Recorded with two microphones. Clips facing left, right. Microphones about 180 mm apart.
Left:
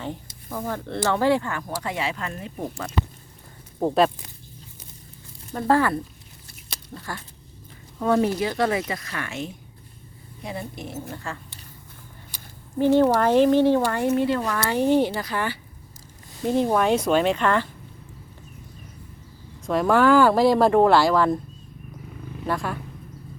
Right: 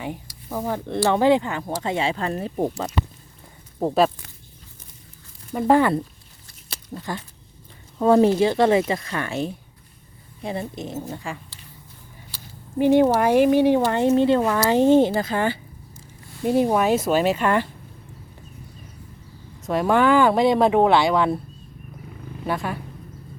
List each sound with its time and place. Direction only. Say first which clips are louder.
0.5 s speech: right 3 dB; 15° right (ahead or behind); by 2.6 s 35° right (ahead or behind)
3.8 s speech: right 1 dB; centre (ahead or behind)
5.5 s speech: right 3 dB; 15° right (ahead or behind)
12.3 s a sound: right 5 dB; 15° left (ahead or behind)
12.8 s speech: right 1 dB; 15° right (ahead or behind)
16.4 s speech: right 2 dB; 5° right (ahead or behind)
19.6 s speech: even; centre (ahead or behind)
22.4 s speech: right 1 dB; centre (ahead or behind)